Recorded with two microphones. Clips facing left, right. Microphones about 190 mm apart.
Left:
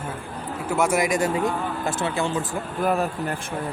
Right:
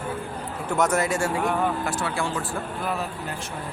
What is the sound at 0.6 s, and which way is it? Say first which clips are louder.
Speech: left 1 dB; 10° left (ahead or behind).